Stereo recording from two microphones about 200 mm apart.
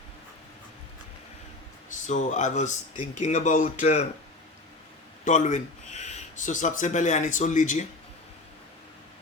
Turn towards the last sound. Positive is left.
turn(degrees=40)  # may be behind; listen again after turning